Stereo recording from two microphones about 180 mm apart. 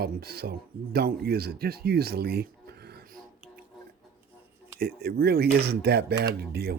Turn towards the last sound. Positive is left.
turn(degrees=-60)  # may be behind; listen again after turning